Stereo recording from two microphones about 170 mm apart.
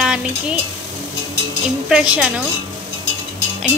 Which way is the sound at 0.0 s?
5° right (ahead or behind).